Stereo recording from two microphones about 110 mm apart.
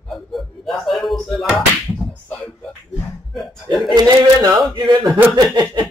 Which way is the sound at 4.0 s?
35° right (ahead or behind).